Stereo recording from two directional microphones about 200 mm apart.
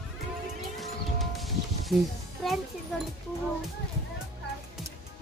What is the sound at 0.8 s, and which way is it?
Music, centre (ahead or behind).